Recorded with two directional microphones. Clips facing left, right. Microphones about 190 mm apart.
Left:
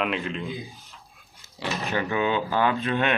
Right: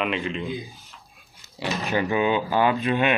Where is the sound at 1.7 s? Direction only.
15° right (ahead or behind).